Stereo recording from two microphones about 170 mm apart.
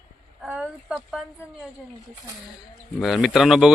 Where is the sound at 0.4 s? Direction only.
5° right (ahead or behind).